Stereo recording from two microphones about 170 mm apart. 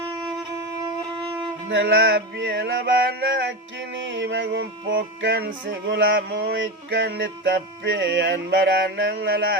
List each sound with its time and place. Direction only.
1.7 s music: 90° right